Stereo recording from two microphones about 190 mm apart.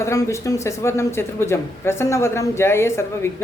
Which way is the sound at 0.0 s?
15° left (ahead or behind).